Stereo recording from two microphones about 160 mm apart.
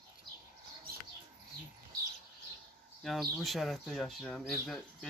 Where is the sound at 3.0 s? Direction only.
Centre (ahead or behind).